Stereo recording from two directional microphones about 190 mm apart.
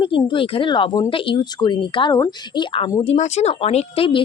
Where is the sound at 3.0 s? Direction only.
35° left (ahead or behind).